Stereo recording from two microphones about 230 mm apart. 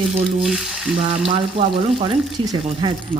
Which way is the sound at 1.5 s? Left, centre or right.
Right.